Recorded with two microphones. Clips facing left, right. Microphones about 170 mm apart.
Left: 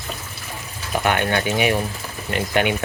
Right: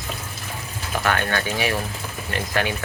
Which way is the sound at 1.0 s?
20° left (ahead or behind).